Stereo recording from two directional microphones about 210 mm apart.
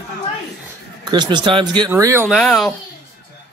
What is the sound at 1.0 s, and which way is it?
Speech, 20° right (ahead or behind).